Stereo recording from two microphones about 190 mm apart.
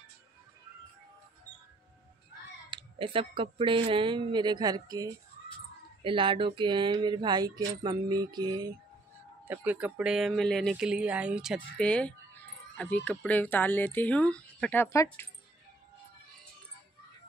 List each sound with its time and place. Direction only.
2.7 s speech: 30° right (ahead or behind)
9.5 s speech: 10° right (ahead or behind); by 15.2 s 15° left (ahead or behind)